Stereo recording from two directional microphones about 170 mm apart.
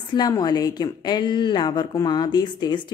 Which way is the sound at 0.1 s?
25° left (ahead or behind).